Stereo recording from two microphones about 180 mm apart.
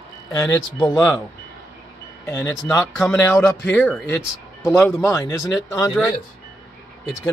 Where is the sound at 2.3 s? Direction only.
15° left (ahead or behind).